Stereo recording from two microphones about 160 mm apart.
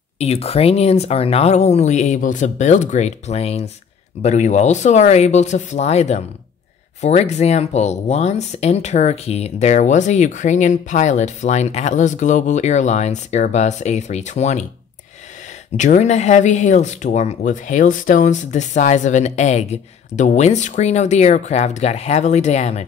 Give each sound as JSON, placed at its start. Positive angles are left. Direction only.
{"t": 0.2, "sound": "speech", "side_deg": 40}
{"t": 15.7, "sound": "speech", "side_deg": 50}